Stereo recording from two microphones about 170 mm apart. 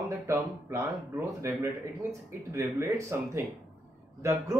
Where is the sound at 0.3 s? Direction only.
15° right (ahead or behind).